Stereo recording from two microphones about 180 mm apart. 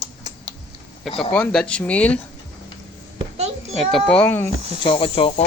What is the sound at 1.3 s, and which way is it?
Speech, 5° left (ahead or behind).